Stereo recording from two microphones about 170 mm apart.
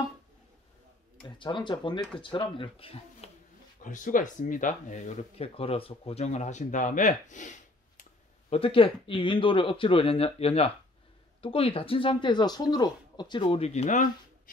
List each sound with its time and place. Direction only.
1.2 s speech: 30° left (ahead or behind)
3.8 s speech: 50° left (ahead or behind)
8.5 s speech: 30° left (ahead or behind)